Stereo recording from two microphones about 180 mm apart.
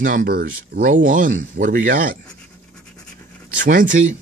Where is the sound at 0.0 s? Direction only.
50° right (ahead or behind).